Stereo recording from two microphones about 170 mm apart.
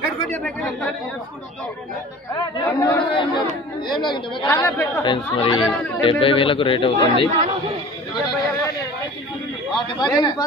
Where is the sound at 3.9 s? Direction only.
25° left (ahead or behind); by 5.0 s 10° left (ahead or behind).